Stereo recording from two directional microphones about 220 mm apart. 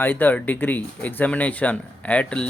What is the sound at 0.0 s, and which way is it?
Speech, 10° left (ahead or behind).